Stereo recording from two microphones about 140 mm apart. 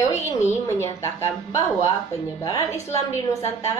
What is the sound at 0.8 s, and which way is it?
A woman's voice, 20° left (ahead or behind).